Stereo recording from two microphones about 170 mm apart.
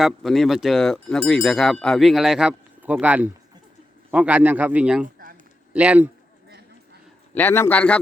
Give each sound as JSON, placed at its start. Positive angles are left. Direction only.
{"t": 0.0, "sound": "speech", "side_deg": 0}
{"t": 5.0, "sound": "a sound", "side_deg": -60}
{"t": 5.7, "sound": "speech", "side_deg": -10}
{"t": 7.3, "sound": "a man's voice", "side_deg": 15}